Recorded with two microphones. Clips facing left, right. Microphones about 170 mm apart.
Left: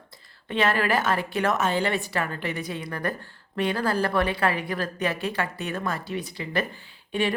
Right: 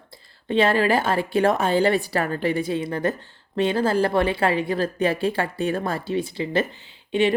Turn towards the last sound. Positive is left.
turn(degrees=-25)  # may be behind; listen again after turning